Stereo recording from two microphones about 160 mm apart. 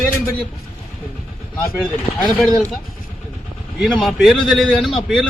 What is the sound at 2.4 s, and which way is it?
Speech, 5° left (ahead or behind).